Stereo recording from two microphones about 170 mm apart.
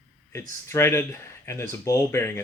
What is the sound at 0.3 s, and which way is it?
Speech, 15° left (ahead or behind).